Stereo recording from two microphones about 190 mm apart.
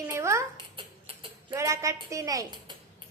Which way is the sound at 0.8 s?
30° right (ahead or behind).